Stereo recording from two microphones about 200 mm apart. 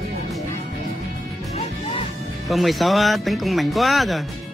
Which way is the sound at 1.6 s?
30° left (ahead or behind).